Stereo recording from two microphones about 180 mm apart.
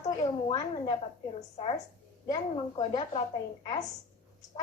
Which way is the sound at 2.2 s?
20° left (ahead or behind).